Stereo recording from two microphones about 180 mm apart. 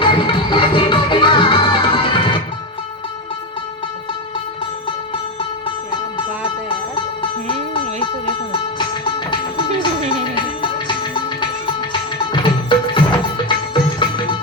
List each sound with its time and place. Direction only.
0.0 s music: 25° left (ahead or behind)
6.7 s music: 30° left (ahead or behind)
8.8 s music: 25° left (ahead or behind)